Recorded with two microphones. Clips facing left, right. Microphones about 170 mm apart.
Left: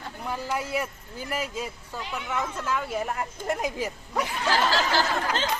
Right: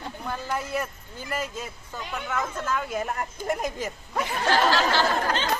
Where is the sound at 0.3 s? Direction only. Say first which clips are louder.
Left 1 dB; 10° left (ahead or behind).